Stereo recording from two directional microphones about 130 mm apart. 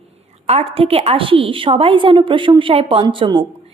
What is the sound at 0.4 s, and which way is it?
A woman's voice, 50° right (ahead or behind).